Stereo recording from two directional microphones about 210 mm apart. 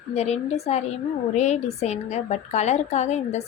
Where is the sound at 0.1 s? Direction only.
30° left (ahead or behind).